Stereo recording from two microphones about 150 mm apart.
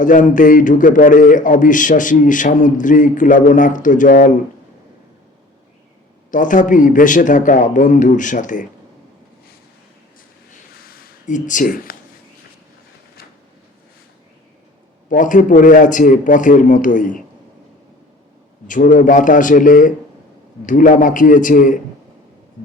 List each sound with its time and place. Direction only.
0.0 s a man's voice: 60° left (ahead or behind)
6.3 s a man's voice: 60° left (ahead or behind)
10.5 s a sound: 55° left (ahead or behind)
15.1 s a man's voice: 60° left (ahead or behind)
18.7 s a man's voice: 60° left (ahead or behind)